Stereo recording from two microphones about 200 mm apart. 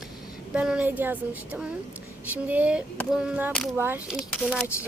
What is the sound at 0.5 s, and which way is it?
A woman's voice, 5° right (ahead or behind).